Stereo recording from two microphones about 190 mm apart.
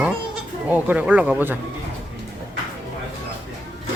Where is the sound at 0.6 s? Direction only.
5° right (ahead or behind).